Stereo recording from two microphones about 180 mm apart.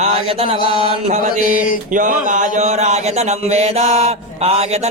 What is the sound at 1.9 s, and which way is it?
Speech, 45° right (ahead or behind).